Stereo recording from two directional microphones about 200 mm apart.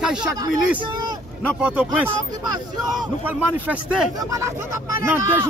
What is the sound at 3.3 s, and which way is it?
A man's voice, 10° right (ahead or behind).